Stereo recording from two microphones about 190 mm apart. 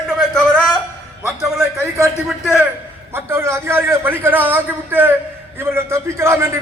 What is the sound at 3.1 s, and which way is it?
A man's voice, 15° right (ahead or behind).